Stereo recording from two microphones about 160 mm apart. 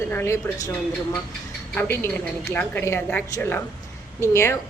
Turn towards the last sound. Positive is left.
turn(degrees=15)  # may be behind; listen again after turning